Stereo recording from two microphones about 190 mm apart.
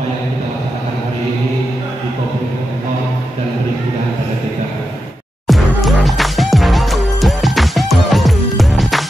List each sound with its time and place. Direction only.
5.5 s music: centre (ahead or behind)